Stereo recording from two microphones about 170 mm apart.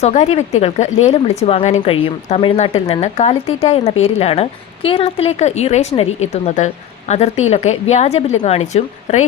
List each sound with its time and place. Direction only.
0.0 s a woman's voice: 40° left (ahead or behind)